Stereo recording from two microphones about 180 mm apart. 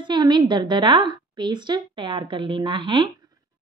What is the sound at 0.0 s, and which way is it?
A woman's voice, 25° right (ahead or behind).